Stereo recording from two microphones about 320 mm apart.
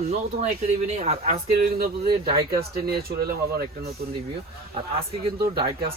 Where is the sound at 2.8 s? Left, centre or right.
Right.